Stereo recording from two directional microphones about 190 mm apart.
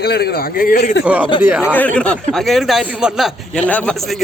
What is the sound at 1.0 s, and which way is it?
Speech, 5° right (ahead or behind).